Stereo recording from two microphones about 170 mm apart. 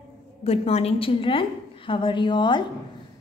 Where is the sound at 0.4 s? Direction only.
35° left (ahead or behind).